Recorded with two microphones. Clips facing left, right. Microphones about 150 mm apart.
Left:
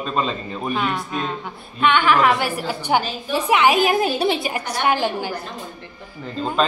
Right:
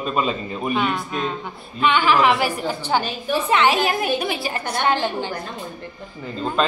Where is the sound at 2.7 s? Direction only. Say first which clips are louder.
Left 1 dB; 15° left (ahead or behind).